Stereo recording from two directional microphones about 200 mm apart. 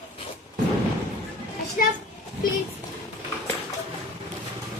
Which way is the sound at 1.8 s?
45° left (ahead or behind).